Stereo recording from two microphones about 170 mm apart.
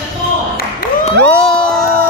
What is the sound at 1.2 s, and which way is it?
Crowd, 5° left (ahead or behind).